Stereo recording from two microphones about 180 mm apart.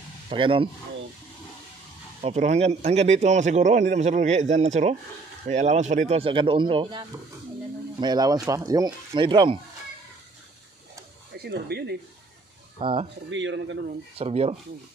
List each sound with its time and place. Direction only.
0.3 s speech: 30° right (ahead or behind)
2.2 s a man's voice: 40° right (ahead or behind)
11.3 s speech: 65° right (ahead or behind)
12.7 s speech: 30° right (ahead or behind)
13.3 s speech: 90° right
14.1 s a man's voice: 35° right (ahead or behind)